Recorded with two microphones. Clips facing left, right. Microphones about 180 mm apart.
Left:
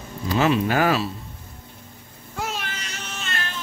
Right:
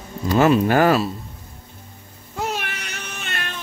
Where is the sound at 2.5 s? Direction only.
65° right (ahead or behind).